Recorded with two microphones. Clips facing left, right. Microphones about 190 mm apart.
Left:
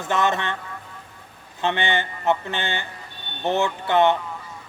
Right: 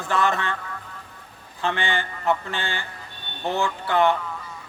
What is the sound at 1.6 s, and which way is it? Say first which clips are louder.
A man's voice: left 2 dB; 20° left (ahead or behind).